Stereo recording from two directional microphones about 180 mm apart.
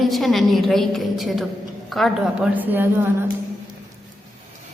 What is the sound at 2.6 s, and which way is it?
Speech, 10° right (ahead or behind).